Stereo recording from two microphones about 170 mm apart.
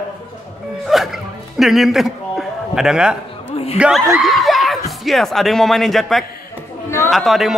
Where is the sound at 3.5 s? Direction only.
35° left (ahead or behind).